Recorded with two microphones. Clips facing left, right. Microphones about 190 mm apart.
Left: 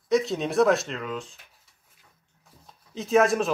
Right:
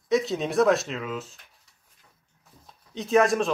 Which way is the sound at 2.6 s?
Centre (ahead or behind).